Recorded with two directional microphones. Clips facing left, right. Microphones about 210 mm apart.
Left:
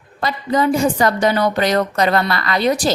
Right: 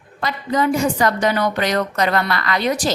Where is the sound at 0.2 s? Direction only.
30° left (ahead or behind).